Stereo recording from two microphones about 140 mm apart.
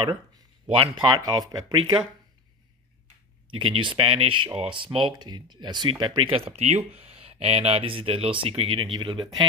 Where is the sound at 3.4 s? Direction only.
35° right (ahead or behind).